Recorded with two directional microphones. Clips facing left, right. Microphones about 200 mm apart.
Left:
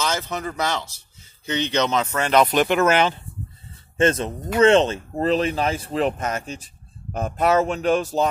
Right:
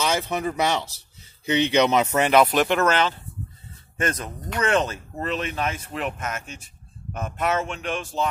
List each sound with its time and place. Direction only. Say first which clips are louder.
0.0 s speech: right 2 dB; 15° right (ahead or behind); by 3.2 s 10° left (ahead or behind)
4.0 s speech: left 8 dB; 25° left (ahead or behind)